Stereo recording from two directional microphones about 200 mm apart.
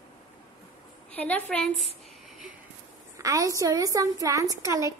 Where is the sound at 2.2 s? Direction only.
Centre (ahead or behind).